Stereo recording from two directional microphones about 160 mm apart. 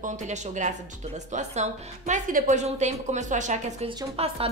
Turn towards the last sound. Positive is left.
turn(degrees=-35)  # may be behind; listen again after turning